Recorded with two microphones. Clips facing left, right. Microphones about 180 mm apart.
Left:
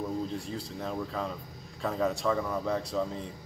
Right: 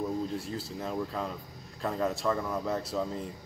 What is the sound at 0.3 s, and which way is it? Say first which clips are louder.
A man's voice: right 1 dB; centre (ahead or behind).